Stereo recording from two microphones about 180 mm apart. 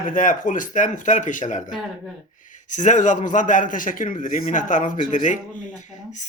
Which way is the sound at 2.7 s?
45° left (ahead or behind).